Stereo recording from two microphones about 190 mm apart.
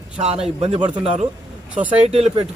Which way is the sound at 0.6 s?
30° right (ahead or behind).